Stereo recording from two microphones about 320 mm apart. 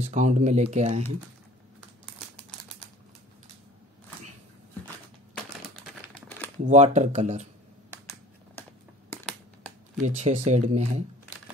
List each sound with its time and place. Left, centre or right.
0.0 s speech: right
6.1 s crumpling: centre
6.6 s speech: right
9.1 s finger snapping: centre
10.0 s speech: right